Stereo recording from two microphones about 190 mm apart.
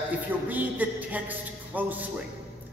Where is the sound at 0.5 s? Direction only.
10° right (ahead or behind).